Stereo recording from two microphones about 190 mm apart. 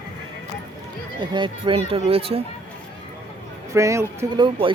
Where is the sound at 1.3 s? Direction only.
25° right (ahead or behind).